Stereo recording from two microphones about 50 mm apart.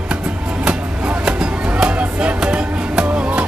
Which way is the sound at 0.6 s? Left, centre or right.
Right.